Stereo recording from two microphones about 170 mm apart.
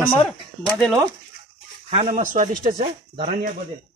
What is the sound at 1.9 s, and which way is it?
Speech, 35° right (ahead or behind).